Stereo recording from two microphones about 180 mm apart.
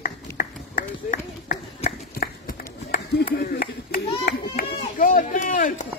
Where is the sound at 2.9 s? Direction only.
50° left (ahead or behind).